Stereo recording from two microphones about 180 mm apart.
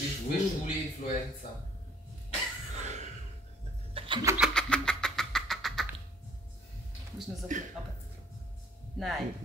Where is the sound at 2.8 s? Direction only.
40° right (ahead or behind).